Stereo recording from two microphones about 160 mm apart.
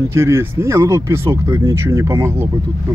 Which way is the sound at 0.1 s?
15° right (ahead or behind).